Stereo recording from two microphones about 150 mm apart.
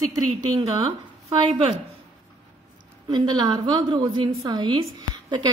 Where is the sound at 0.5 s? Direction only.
40° right (ahead or behind).